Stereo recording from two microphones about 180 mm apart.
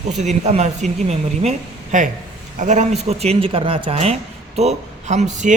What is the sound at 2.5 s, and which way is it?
Speech, 40° right (ahead or behind).